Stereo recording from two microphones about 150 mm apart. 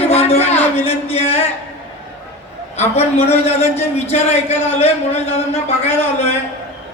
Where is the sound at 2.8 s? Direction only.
45° left (ahead or behind).